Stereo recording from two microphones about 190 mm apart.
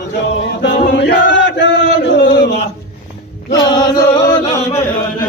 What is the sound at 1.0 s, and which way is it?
Chant, 70° left (ahead or behind).